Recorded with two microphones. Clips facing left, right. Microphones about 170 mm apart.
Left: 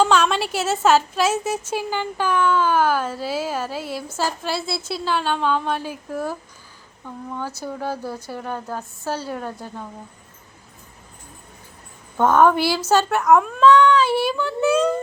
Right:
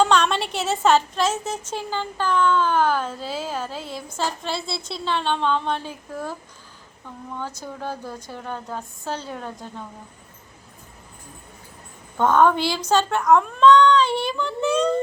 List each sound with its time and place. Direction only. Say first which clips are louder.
0.0 s a woman's voice: left 1 dB; 5° left (ahead or behind)
7.3 s a woman's voice: left 3 dB; 10° left (ahead or behind)
12.1 s a woman's voice: left 2 dB; 10° left (ahead or behind)